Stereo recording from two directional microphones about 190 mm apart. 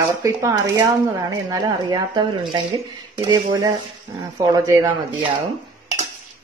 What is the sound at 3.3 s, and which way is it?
Speech, 20° right (ahead or behind).